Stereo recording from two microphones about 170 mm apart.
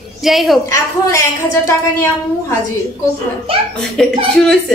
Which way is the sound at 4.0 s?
Centre (ahead or behind).